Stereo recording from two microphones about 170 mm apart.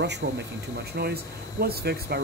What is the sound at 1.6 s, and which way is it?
Speech, 65° right (ahead or behind).